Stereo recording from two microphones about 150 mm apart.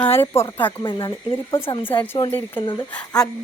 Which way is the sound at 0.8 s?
30° left (ahead or behind).